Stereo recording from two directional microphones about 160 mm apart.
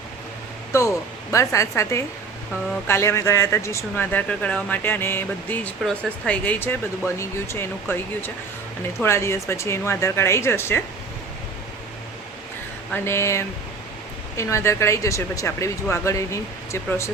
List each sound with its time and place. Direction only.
0.7 s speech: 20° left (ahead or behind)
12.9 s speech: 15° left (ahead or behind)